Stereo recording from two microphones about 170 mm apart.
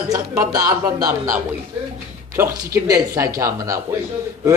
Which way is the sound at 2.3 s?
20° right (ahead or behind).